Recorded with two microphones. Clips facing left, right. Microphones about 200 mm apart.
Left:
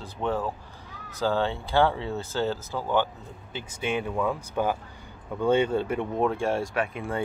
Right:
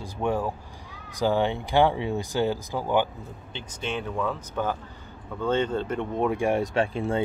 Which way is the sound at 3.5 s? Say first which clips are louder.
Left 3 dB; 10° left (ahead or behind).